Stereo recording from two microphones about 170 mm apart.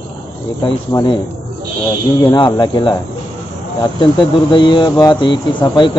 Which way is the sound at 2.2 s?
25° left (ahead or behind).